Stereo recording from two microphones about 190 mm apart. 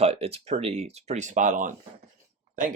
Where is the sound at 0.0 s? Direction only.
30° right (ahead or behind).